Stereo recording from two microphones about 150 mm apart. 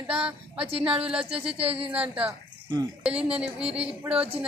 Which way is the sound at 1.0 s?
5° right (ahead or behind).